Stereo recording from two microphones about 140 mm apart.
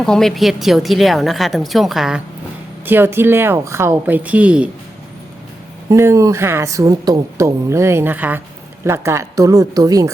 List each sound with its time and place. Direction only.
0.0 s a woman's voice: 5° left (ahead or behind)
2.8 s a woman's voice: 15° right (ahead or behind)
5.9 s speech: 20° right (ahead or behind)